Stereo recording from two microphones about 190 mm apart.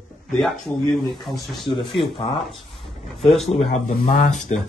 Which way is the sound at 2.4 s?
Centre (ahead or behind).